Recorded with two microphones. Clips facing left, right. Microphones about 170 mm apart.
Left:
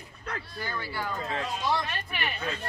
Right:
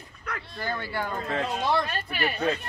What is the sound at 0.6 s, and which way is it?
Speech, 50° right (ahead or behind).